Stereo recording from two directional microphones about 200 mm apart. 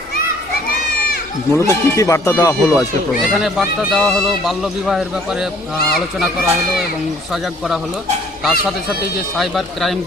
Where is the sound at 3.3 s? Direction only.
Centre (ahead or behind).